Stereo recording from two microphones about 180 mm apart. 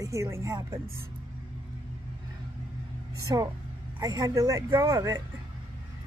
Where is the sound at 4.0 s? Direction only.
20° right (ahead or behind).